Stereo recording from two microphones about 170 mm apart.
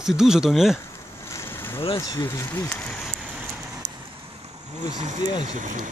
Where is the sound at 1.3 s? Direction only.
15° left (ahead or behind).